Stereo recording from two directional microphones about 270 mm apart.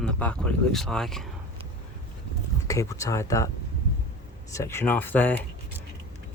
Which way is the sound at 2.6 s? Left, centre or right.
Centre.